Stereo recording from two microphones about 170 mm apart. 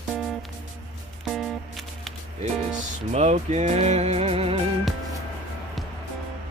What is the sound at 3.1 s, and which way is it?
Speech, 40° right (ahead or behind).